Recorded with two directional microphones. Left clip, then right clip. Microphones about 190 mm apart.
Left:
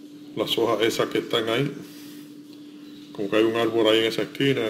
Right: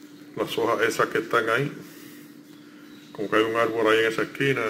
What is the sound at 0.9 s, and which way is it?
Speech, 25° left (ahead or behind).